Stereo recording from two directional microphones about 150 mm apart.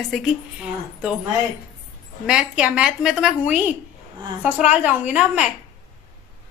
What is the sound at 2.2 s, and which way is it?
A woman's voice, 5° right (ahead or behind).